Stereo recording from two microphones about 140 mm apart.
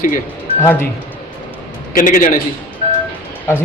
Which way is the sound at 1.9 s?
70° left (ahead or behind).